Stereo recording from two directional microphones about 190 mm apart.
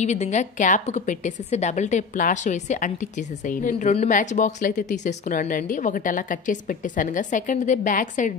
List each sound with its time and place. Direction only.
0.0 s a woman's voice: 35° left (ahead or behind)